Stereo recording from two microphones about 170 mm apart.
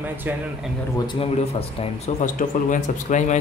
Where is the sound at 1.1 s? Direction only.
35° left (ahead or behind).